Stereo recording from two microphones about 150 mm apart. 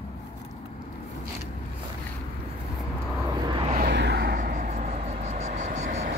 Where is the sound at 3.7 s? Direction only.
90° right; by 6.1 s 50° right (ahead or behind).